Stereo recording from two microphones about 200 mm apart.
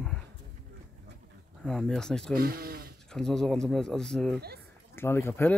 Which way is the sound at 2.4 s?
50° right (ahead or behind).